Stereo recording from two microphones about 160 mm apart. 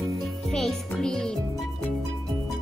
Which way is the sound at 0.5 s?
5° left (ahead or behind).